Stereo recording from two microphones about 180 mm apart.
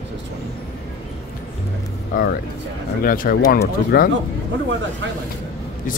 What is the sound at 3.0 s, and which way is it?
Speech, 50° left (ahead or behind).